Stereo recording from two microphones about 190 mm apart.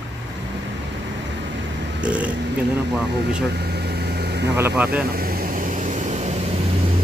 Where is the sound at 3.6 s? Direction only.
60° right (ahead or behind).